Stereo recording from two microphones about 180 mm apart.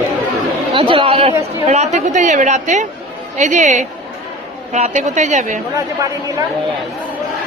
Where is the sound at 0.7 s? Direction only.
30° right (ahead or behind).